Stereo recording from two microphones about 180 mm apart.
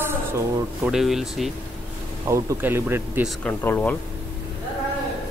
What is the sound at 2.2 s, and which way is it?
Speech, 15° right (ahead or behind).